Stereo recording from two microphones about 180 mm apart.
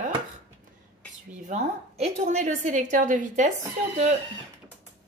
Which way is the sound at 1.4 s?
40° right (ahead or behind).